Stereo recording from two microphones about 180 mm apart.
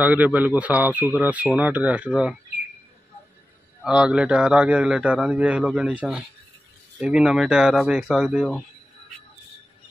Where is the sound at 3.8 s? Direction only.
5° right (ahead or behind).